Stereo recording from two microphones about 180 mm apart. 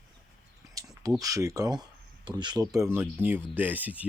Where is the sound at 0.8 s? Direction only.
20° right (ahead or behind).